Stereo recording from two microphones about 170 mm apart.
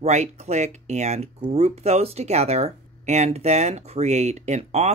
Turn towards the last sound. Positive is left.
turn(degrees=-40)  # may be behind; listen again after turning